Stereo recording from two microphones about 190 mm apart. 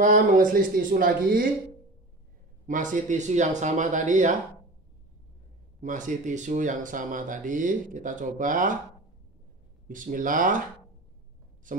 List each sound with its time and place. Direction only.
0.0 s speech: 45° right (ahead or behind)
2.6 s speech: 45° right (ahead or behind)
5.8 s speech: 40° right (ahead or behind)
9.8 s speech: 45° right (ahead or behind)